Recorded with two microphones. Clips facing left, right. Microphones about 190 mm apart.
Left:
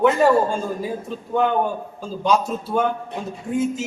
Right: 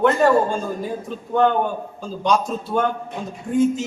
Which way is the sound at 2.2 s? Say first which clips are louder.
Even; 5° left (ahead or behind).